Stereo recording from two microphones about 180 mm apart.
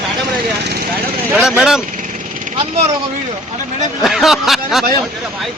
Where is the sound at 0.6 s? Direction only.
65° right (ahead or behind).